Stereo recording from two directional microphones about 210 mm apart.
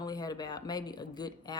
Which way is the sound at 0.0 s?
20° left (ahead or behind).